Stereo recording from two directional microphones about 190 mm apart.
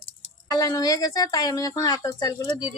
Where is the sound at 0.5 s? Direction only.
20° left (ahead or behind).